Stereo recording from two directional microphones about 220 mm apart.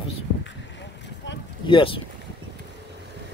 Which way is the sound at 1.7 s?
25° left (ahead or behind).